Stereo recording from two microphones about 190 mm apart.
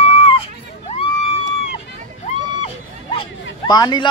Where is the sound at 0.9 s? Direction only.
30° left (ahead or behind).